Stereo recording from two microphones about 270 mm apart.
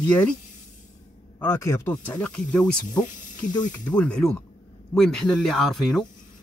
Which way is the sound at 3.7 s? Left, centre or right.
Centre.